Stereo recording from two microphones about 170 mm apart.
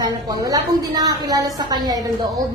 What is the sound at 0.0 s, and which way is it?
A woman's voice, 20° right (ahead or behind).